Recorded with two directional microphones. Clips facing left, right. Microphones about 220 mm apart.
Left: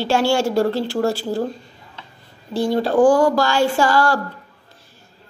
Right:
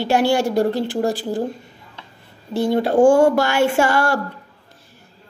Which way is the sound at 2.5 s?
20° right (ahead or behind).